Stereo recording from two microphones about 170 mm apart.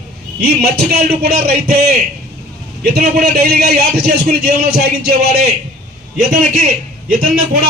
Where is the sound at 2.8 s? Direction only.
65° right (ahead or behind).